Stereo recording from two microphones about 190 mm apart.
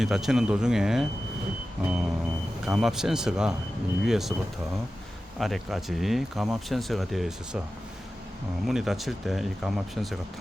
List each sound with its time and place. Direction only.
0.0 s speech: centre (ahead or behind)
8.6 s speech: centre (ahead or behind)